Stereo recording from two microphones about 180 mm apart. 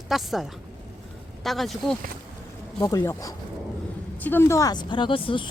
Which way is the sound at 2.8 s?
15° left (ahead or behind).